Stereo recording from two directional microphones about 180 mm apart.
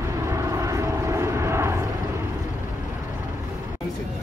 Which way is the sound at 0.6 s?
15° right (ahead or behind).